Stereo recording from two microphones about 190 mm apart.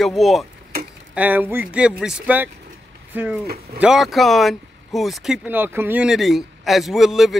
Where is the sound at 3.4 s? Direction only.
55° right (ahead or behind).